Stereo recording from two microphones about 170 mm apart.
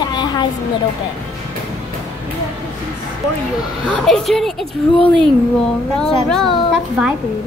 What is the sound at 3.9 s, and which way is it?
Speech, centre (ahead or behind).